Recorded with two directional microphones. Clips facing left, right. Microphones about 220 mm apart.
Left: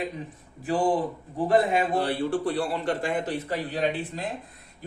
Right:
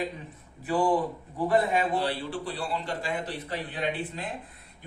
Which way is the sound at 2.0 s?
55° left (ahead or behind).